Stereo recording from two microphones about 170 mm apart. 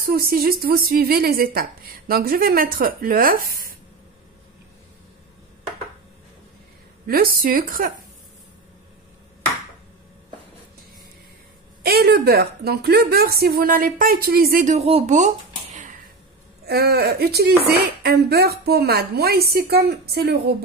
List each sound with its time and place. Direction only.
0.0 s a woman's voice: 60° right (ahead or behind)
7.1 s a woman's voice: 60° right (ahead or behind)
11.8 s a woman's voice: 65° right (ahead or behind); by 16.0 s 45° right (ahead or behind)
16.6 s a woman's voice: 70° right (ahead or behind)